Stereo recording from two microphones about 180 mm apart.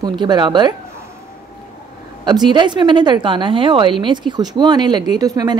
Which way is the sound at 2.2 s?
25° right (ahead or behind).